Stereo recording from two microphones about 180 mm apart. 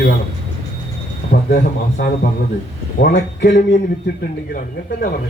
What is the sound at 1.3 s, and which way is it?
Speech, 50° left (ahead or behind).